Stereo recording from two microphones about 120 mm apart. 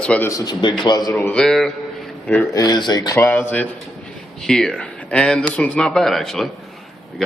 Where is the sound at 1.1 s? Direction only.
15° left (ahead or behind).